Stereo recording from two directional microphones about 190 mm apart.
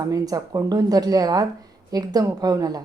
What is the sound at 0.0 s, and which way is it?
A woman's voice, 20° right (ahead or behind).